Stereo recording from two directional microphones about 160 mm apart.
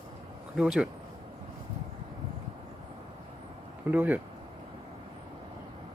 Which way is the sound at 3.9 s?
10° right (ahead or behind).